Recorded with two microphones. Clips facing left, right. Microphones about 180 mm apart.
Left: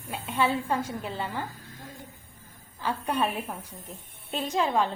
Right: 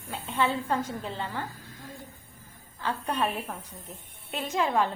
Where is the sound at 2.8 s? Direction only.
10° left (ahead or behind).